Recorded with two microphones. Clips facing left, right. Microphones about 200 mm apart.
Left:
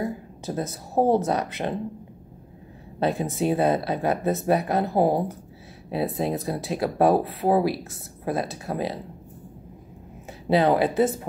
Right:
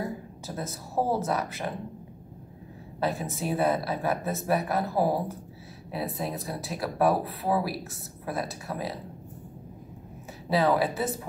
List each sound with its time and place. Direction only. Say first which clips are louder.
0.9 s speech: left 6 dB; 25° left (ahead or behind)
3.1 s speech: left 8 dB; 25° left (ahead or behind)
10.5 s speech: left 4 dB; 25° left (ahead or behind)